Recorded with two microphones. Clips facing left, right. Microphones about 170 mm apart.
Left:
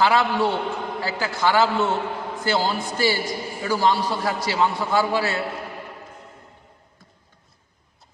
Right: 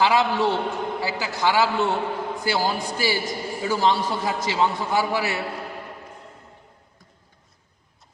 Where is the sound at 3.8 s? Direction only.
25° right (ahead or behind).